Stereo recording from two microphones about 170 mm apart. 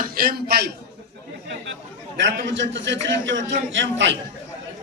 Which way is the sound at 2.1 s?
90° right.